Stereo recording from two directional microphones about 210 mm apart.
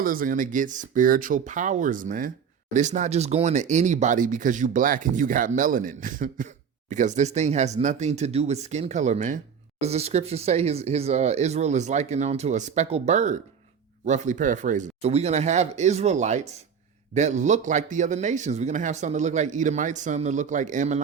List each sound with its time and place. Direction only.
0.0 s speech: 40° right (ahead or behind)